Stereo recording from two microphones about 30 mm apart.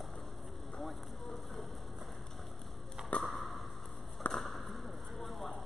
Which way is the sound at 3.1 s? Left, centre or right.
Left.